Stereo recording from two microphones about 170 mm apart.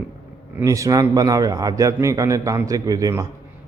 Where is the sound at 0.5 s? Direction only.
20° right (ahead or behind).